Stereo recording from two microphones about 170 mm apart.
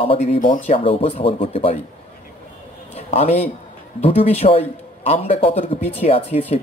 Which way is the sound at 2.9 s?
40° left (ahead or behind).